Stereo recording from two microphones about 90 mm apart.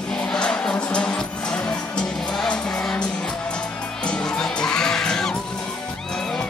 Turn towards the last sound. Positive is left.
turn(degrees=5)  # may be behind; listen again after turning